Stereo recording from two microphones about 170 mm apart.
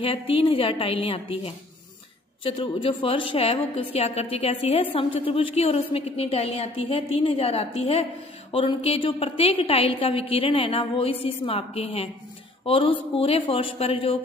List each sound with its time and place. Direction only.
0.0 s a woman's voice: 35° left (ahead or behind)